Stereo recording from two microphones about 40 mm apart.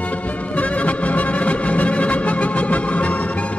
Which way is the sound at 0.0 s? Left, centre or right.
Left.